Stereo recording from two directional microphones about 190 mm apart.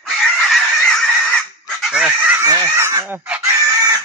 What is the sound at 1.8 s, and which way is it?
Fowl, centre (ahead or behind).